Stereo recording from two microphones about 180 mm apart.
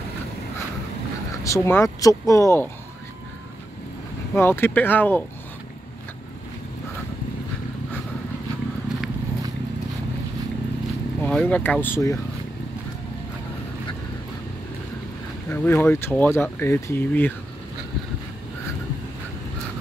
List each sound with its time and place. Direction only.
1.4 s speech: 15° left (ahead or behind)
4.4 s speech: 10° left (ahead or behind)
11.2 s speech: 5° left (ahead or behind)
15.5 s speech: 10° left (ahead or behind)